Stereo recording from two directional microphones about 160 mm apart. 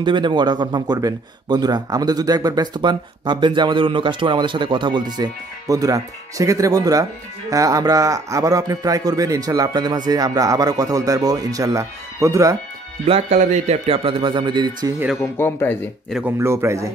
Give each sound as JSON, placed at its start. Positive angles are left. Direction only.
{"t": 0.0, "sound": "speech", "side_deg": -30}
{"t": 13.0, "sound": "speech", "side_deg": -40}
{"t": 15.3, "sound": "speech", "side_deg": 10}
{"t": 16.1, "sound": "speech", "side_deg": -5}
{"t": 16.3, "sound": "a man's voice", "side_deg": -15}